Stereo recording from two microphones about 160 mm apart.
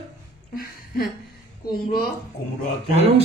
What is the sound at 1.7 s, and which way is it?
Speech, 75° left (ahead or behind).